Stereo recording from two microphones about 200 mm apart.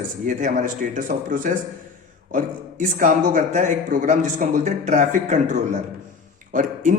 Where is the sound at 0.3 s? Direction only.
40° right (ahead or behind).